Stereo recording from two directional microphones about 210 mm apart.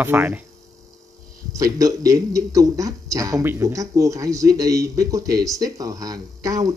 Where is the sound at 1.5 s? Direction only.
15° right (ahead or behind).